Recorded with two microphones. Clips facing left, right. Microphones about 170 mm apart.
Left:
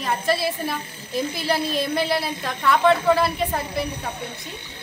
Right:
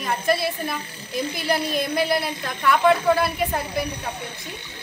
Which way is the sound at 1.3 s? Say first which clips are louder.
Right 1 dB; 30° left (ahead or behind).